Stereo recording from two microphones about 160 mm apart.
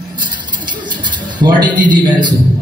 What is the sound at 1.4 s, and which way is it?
Speech, 25° right (ahead or behind).